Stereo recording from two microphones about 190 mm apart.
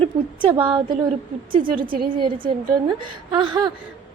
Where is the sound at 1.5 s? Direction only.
45° right (ahead or behind).